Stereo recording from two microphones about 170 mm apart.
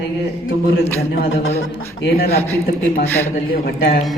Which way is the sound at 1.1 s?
70° left (ahead or behind).